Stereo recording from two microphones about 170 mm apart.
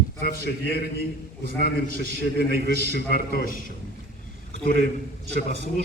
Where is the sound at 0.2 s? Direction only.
70° left (ahead or behind).